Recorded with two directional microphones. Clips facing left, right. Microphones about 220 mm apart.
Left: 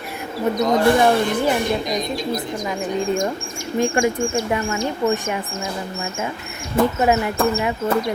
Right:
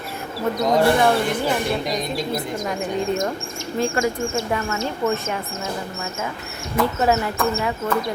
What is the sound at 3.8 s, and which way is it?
Speech, 15° left (ahead or behind).